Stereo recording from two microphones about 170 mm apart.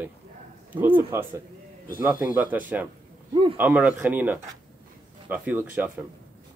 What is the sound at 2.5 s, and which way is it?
Speech, 10° right (ahead or behind).